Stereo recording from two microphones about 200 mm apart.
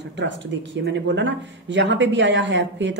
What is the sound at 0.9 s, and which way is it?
A woman's voice, 65° right (ahead or behind).